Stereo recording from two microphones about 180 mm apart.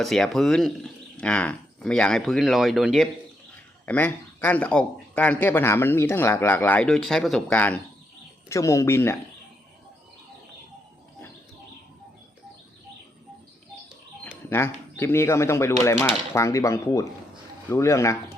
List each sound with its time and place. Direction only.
0.0 s speech: centre (ahead or behind)
14.5 s speech: 15° left (ahead or behind)